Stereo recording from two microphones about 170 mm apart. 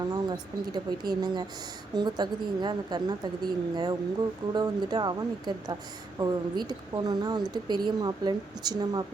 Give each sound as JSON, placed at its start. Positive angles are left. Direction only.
{"t": 0.0, "sound": "speech", "side_deg": -25}